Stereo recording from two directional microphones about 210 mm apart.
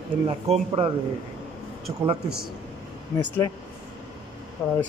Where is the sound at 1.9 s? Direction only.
20° right (ahead or behind).